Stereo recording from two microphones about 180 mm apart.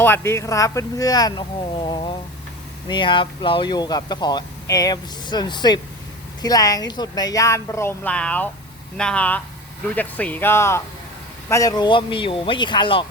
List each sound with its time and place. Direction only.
0.0 s speech: 15° left (ahead or behind)